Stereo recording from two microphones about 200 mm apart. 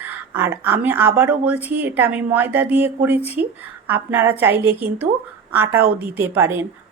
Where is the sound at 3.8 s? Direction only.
10° right (ahead or behind).